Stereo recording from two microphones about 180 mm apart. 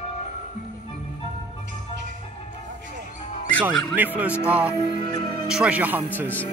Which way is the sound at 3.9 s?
10° right (ahead or behind).